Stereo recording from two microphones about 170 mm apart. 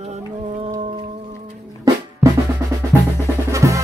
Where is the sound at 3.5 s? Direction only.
20° right (ahead or behind).